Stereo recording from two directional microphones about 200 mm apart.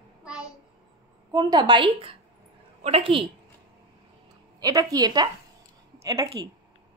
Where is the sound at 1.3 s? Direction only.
20° right (ahead or behind).